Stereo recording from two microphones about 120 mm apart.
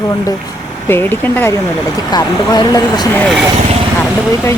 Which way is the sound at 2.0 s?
35° left (ahead or behind).